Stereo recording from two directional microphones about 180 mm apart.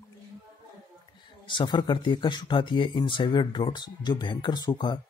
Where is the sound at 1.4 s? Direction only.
25° left (ahead or behind).